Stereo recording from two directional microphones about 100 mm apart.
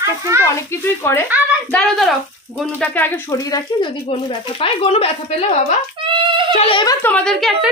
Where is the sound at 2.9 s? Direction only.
20° left (ahead or behind).